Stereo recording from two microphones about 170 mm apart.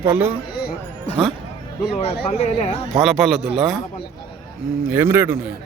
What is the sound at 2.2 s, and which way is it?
Speech, 40° left (ahead or behind).